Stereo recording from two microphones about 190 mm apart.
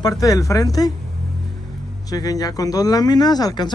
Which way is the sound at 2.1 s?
20° left (ahead or behind).